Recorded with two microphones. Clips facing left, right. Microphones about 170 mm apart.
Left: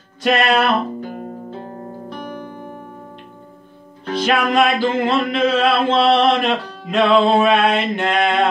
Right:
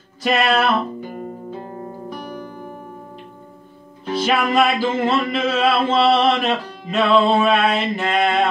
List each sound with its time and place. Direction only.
0.2 s music: centre (ahead or behind)
4.0 s music: 5° right (ahead or behind)